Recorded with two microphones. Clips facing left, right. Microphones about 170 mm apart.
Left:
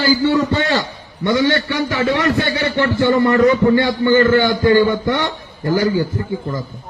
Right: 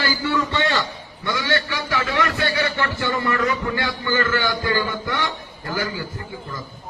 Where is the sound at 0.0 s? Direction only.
35° left (ahead or behind).